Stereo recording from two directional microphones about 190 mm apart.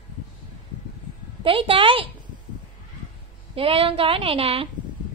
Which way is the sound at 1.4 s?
30° right (ahead or behind).